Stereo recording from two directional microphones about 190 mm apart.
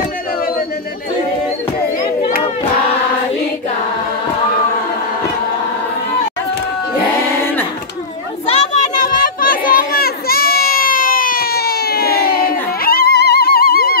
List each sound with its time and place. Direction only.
7.3 s a sound: 10° left (ahead or behind)
9.2 s crowd: 50° left (ahead or behind)
12.8 s music: 55° left (ahead or behind)